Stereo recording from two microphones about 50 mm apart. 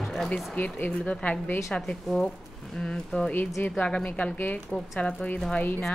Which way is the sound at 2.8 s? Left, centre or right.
Centre.